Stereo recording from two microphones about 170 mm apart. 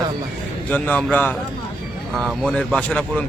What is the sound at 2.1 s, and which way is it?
Speech, centre (ahead or behind).